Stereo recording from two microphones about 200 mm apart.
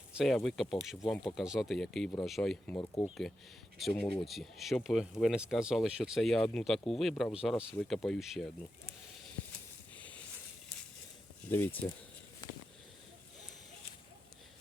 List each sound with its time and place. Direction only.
0.2 s speech: centre (ahead or behind)
2.7 s speech: 15° left (ahead or behind)
3.8 s speech: centre (ahead or behind)
11.4 s speech: 10° left (ahead or behind)
12.4 s sniff: 20° left (ahead or behind)